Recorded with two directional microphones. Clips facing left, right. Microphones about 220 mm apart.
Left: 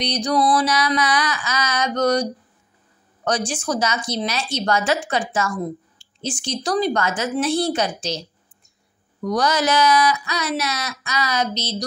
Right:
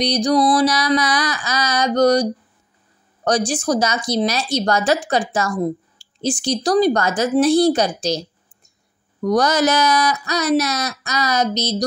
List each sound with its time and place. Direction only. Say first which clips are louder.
0.0 s speech: right 4 dB; 35° right (ahead or behind)
3.3 s speech: right 5 dB; 35° right (ahead or behind)